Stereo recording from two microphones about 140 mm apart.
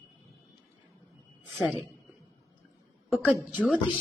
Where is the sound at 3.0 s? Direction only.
Centre (ahead or behind).